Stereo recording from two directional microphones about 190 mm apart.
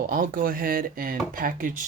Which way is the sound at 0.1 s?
45° right (ahead or behind).